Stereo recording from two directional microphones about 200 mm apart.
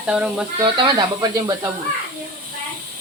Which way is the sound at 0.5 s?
25° right (ahead or behind).